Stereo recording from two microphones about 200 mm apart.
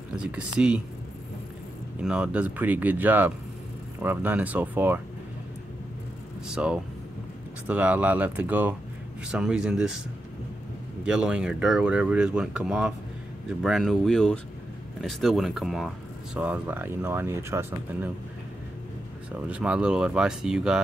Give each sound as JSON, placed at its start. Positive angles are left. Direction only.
{"t": 0.1, "sound": "speech", "side_deg": -5}
{"t": 2.0, "sound": "speech", "side_deg": -5}
{"t": 6.4, "sound": "speech", "side_deg": -5}
{"t": 11.1, "sound": "speech", "side_deg": -5}
{"t": 19.5, "sound": "speech", "side_deg": -5}